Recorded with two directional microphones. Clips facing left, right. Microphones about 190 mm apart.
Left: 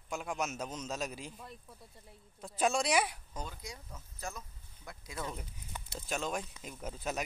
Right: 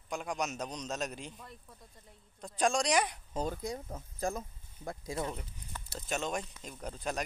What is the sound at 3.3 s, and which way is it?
Speech, 45° right (ahead or behind).